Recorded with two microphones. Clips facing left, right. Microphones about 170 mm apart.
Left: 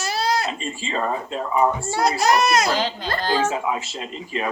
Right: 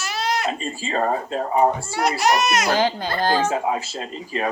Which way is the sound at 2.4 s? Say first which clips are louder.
Left 2 dB; 35° left (ahead or behind).